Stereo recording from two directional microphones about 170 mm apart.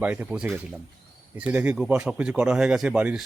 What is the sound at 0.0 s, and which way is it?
Speech, 10° right (ahead or behind).